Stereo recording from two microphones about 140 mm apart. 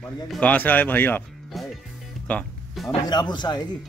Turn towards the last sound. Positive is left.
turn(degrees=30)  # may be behind; listen again after turning